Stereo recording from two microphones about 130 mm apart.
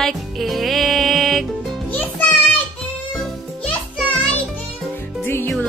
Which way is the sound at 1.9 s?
15° left (ahead or behind).